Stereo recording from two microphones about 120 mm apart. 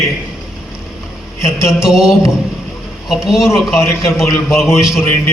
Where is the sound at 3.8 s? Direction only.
25° left (ahead or behind).